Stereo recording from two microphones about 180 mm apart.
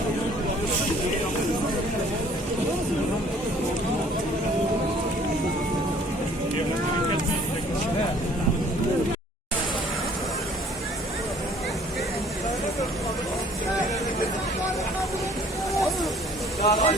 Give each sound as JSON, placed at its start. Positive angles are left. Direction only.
{"t": 16.6, "sound": "vehicle", "side_deg": 40}